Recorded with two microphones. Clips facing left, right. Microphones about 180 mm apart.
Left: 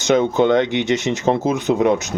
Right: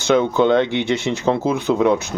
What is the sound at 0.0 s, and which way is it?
Speech, 20° left (ahead or behind).